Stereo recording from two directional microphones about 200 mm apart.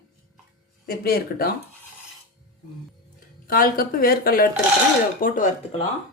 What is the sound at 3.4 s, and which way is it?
A woman's voice, 45° left (ahead or behind).